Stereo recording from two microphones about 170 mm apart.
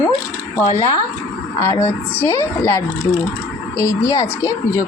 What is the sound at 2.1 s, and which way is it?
Speech, 10° left (ahead or behind).